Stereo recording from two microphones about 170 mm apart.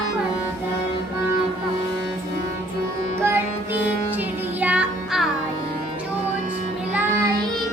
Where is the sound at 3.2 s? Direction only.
15° right (ahead or behind).